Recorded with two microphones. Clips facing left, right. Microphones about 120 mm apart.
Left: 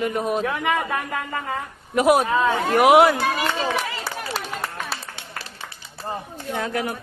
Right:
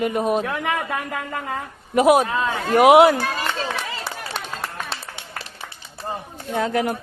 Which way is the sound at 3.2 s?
15° left (ahead or behind).